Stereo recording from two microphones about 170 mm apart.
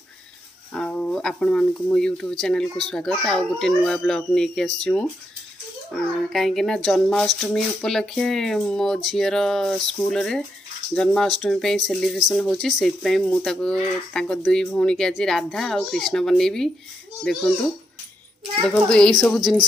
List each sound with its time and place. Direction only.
0.7 s a child's voice: 5° left (ahead or behind)
18.7 s a child's voice: 5° left (ahead or behind)